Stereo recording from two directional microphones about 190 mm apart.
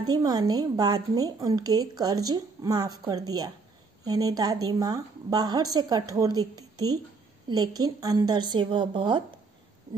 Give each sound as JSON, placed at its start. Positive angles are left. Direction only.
{"t": 0.0, "sound": "a woman's voice", "side_deg": -20}